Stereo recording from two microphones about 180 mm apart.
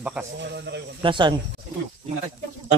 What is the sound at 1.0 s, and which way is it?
Speech, 25° right (ahead or behind).